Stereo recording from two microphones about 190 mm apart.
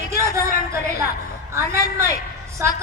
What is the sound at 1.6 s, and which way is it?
Speech, 15° right (ahead or behind).